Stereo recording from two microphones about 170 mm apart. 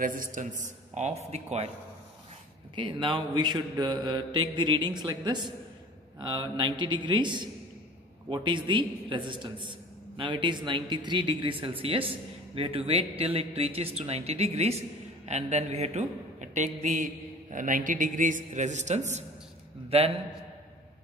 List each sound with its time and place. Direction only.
0.0 s a man's voice: 50° right (ahead or behind)
2.7 s a man's voice: 30° right (ahead or behind)